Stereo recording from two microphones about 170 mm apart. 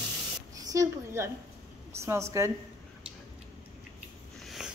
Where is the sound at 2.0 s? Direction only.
15° right (ahead or behind).